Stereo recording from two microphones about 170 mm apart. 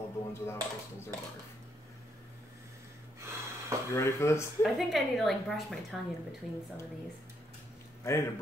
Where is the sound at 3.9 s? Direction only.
15° left (ahead or behind).